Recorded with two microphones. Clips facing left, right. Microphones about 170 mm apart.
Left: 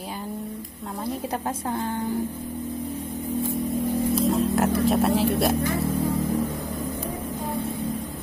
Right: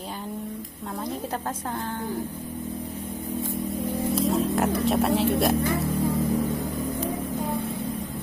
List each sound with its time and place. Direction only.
4.1 s speech: centre (ahead or behind)